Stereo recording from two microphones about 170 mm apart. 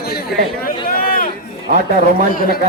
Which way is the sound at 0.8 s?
60° left (ahead or behind).